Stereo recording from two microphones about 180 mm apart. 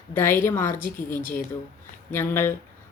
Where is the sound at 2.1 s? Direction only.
15° left (ahead or behind).